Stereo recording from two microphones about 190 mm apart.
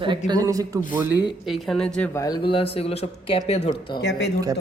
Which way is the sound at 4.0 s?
65° left (ahead or behind).